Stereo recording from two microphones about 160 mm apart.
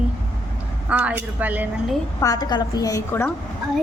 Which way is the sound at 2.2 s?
25° left (ahead or behind).